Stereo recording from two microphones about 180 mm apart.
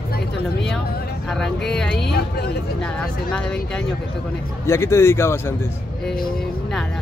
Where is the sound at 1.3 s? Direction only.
5° left (ahead or behind).